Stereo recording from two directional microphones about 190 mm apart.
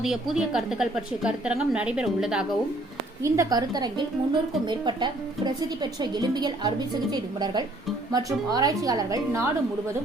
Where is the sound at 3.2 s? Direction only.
20° right (ahead or behind).